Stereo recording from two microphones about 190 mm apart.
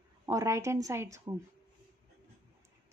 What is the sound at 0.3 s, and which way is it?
Speech, 15° right (ahead or behind).